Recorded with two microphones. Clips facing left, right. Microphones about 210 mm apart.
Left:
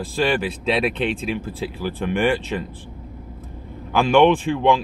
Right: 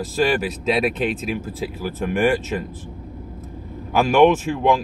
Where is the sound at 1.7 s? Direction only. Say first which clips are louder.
Even; 45° right (ahead or behind).